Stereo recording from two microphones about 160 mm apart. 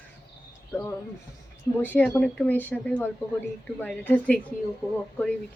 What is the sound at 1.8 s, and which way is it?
A woman's voice, 10° left (ahead or behind).